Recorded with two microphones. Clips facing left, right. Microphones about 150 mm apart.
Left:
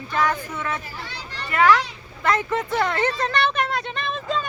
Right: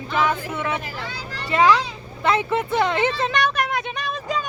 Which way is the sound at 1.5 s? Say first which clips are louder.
Right 1 dB; 15° right (ahead or behind).